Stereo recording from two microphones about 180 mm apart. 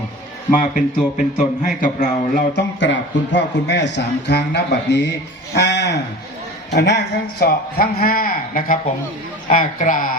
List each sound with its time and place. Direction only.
0.5 s a man's voice: 45° left (ahead or behind)